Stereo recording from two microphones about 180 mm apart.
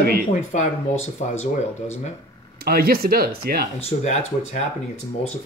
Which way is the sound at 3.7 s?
35° left (ahead or behind).